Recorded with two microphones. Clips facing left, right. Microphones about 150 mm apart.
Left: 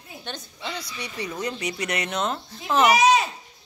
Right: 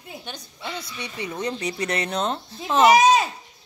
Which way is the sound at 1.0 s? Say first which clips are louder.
Right 1 dB; 25° right (ahead or behind).